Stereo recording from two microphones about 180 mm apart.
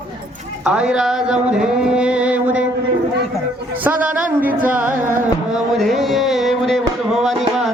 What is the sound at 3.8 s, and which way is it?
Speech, 10° right (ahead or behind).